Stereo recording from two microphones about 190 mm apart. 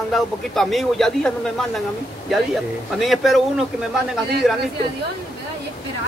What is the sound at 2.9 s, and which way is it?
Speech, centre (ahead or behind).